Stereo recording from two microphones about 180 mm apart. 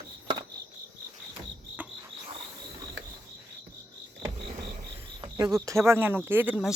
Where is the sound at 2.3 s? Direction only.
25° right (ahead or behind).